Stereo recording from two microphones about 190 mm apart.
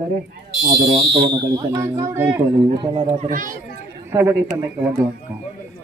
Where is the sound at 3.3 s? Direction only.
45° right (ahead or behind).